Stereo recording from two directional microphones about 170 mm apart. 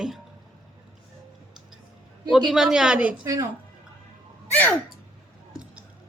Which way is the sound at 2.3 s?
Centre (ahead or behind).